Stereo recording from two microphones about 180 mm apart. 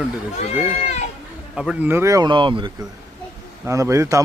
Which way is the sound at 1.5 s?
5° right (ahead or behind).